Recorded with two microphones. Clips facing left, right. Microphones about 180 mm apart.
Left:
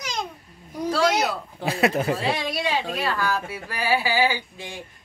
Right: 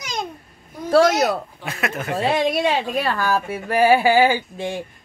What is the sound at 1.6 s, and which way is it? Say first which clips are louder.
Speech: left 5 dB; 35° left (ahead or behind).